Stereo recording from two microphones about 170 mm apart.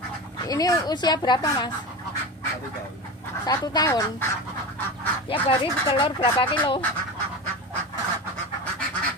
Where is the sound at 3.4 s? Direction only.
25° left (ahead or behind).